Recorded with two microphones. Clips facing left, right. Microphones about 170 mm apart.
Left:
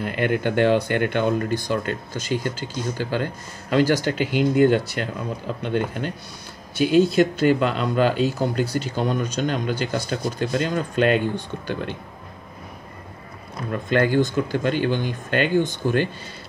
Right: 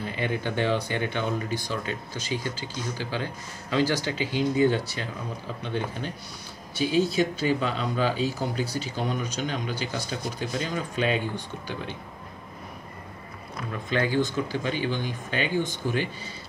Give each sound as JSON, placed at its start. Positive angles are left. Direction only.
{"t": 0.0, "sound": "speech", "side_deg": 60}
{"t": 13.7, "sound": "speech", "side_deg": 55}